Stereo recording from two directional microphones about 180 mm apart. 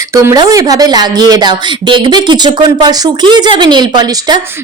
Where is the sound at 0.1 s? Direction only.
15° right (ahead or behind).